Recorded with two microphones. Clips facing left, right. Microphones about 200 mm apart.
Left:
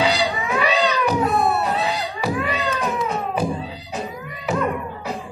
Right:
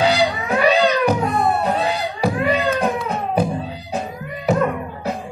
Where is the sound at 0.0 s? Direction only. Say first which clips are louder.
Right 3 dB; 55° right (ahead or behind).